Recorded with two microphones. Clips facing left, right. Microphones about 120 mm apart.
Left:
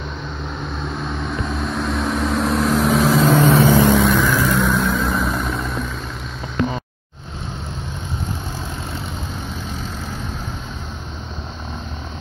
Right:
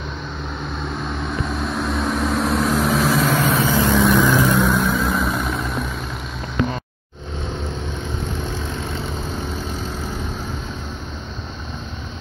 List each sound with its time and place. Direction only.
0.8 s vehicle: centre (ahead or behind)
3.2 s vehicle: 20° left (ahead or behind)
3.9 s vehicle: centre (ahead or behind)
4.2 s vehicle: 15° right (ahead or behind)
4.6 s vehicle: centre (ahead or behind)